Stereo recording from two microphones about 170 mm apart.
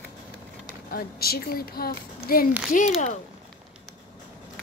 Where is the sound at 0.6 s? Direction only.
65° left (ahead or behind).